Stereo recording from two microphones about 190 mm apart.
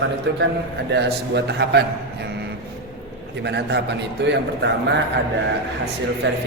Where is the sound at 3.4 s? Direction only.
65° right (ahead or behind).